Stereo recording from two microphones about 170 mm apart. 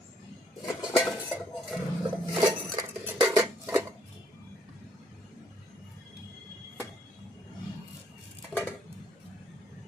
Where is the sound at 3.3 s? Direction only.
15° right (ahead or behind).